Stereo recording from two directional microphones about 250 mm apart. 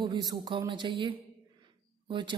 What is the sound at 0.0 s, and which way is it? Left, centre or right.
Speech, centre.